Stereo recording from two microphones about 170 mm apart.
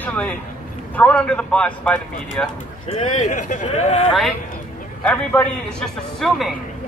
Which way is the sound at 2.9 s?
45° left (ahead or behind).